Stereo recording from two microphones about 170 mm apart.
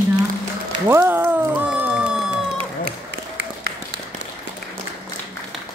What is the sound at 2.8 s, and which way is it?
Applause, 85° right.